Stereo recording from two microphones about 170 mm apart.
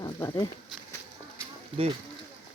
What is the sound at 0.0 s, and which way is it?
Speech, 20° left (ahead or behind).